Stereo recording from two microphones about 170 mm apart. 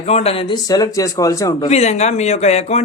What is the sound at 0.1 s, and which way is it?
A man's voice, 35° left (ahead or behind).